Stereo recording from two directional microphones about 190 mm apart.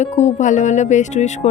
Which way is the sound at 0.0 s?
40° left (ahead or behind).